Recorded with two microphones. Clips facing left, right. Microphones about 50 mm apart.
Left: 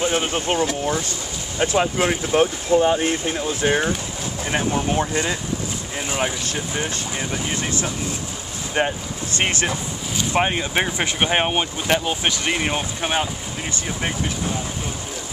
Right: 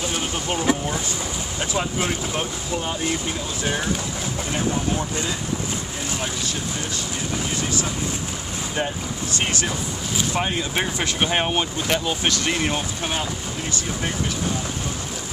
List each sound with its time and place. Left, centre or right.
0.0 s speech: left
1.7 s speech: left
2.9 s speech: left
3.6 s speech: left
8.7 s speech: left